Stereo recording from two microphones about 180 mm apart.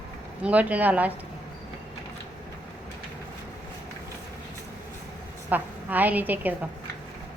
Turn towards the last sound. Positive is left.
turn(degrees=-10)  # may be behind; listen again after turning